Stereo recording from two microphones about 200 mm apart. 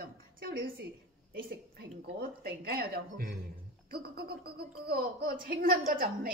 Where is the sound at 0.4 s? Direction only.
50° right (ahead or behind).